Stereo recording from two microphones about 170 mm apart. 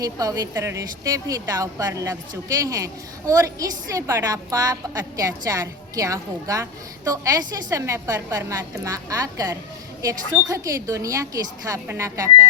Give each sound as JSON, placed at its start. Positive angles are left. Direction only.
{"t": 0.0, "sound": "a woman's voice", "side_deg": -20}